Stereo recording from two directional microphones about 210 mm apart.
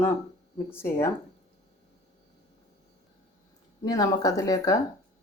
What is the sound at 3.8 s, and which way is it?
Speech, 15° left (ahead or behind).